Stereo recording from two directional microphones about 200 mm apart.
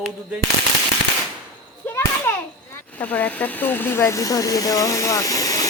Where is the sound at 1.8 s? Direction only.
10° left (ahead or behind).